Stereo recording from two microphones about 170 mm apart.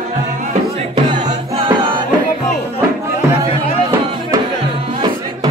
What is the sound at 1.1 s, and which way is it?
Music, 30° right (ahead or behind).